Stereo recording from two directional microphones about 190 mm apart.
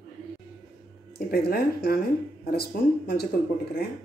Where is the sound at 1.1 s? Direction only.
55° left (ahead or behind).